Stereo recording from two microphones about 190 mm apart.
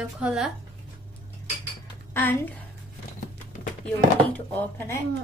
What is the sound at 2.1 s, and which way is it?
Speech, 10° left (ahead or behind).